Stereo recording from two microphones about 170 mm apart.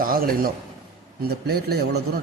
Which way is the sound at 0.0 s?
60° right (ahead or behind).